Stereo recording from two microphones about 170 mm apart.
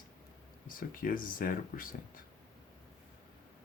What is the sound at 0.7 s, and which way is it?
Speech, 55° left (ahead or behind).